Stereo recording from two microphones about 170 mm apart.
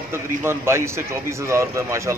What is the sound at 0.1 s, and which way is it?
Speech, 15° right (ahead or behind).